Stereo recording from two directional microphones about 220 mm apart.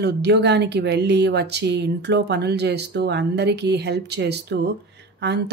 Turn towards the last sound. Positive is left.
turn(degrees=-50)  # may be behind; listen again after turning